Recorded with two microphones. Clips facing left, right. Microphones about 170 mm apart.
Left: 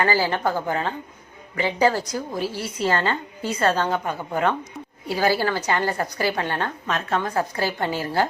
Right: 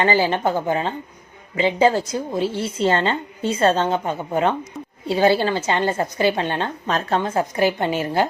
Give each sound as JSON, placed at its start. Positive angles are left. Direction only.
{"t": 0.0, "sound": "a woman's voice", "side_deg": -20}